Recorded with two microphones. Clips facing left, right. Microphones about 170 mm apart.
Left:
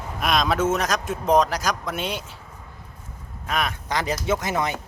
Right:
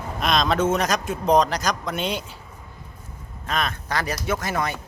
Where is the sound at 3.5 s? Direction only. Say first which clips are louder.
Even; 10° left (ahead or behind).